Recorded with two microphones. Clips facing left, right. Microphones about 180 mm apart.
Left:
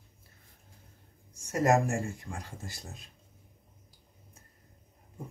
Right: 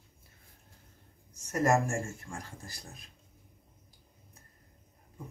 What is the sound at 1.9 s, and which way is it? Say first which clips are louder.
Speech: left 2 dB; 15° left (ahead or behind).